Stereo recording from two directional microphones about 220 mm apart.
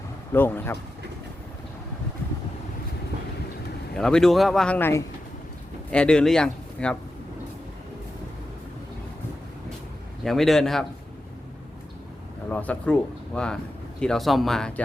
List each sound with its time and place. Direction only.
0.3 s speech: 10° left (ahead or behind)
3.9 s speech: centre (ahead or behind)
10.2 s speech: centre (ahead or behind)
12.5 s speech: 5° left (ahead or behind)